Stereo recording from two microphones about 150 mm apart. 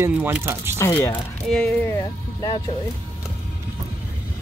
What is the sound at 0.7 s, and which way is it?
Speech, 20° left (ahead or behind).